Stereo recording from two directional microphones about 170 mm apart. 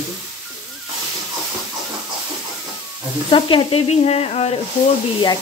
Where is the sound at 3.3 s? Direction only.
30° left (ahead or behind).